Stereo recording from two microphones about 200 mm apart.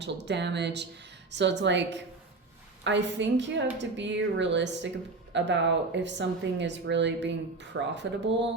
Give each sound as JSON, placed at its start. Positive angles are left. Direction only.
{"t": 0.0, "sound": "speech", "side_deg": -60}